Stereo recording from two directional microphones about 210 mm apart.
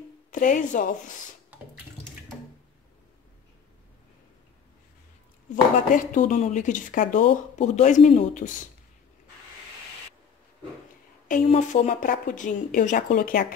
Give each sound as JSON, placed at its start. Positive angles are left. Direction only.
{"t": 0.3, "sound": "a woman's voice", "side_deg": 40}
{"t": 5.5, "sound": "a woman's voice", "side_deg": 40}
{"t": 11.2, "sound": "a woman's voice", "side_deg": 35}